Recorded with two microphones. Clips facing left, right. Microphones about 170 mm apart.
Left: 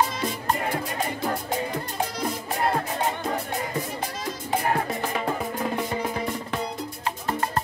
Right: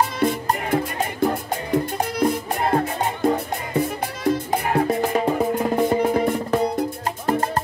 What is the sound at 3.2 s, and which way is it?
Music, 55° right (ahead or behind).